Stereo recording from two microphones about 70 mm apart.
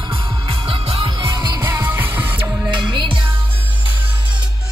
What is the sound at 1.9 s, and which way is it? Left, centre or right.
Music, right.